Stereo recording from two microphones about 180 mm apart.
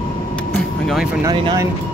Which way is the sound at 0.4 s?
5° left (ahead or behind).